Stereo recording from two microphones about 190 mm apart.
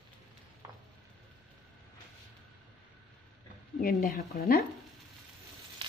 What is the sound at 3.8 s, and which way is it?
Speech, 50° left (ahead or behind).